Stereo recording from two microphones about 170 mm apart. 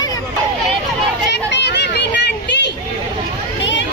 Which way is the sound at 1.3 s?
90° left.